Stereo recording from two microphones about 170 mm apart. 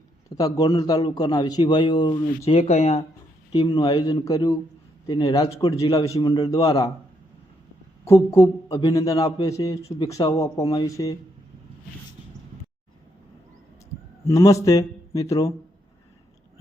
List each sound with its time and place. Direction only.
0.3 s a man's voice: 20° left (ahead or behind)
2.4 s speech: 35° left (ahead or behind)
3.5 s a man's voice: 20° left (ahead or behind)
8.0 s a man's voice: 15° left (ahead or behind)
14.3 s a man's voice: 20° left (ahead or behind)